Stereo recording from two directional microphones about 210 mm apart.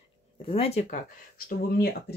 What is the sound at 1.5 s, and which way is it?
Speech, 45° left (ahead or behind).